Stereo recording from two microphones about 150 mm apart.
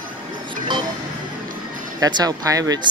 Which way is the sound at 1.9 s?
25° right (ahead or behind).